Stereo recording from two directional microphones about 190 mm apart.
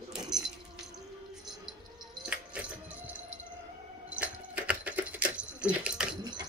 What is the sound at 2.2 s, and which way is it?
Music, 5° right (ahead or behind).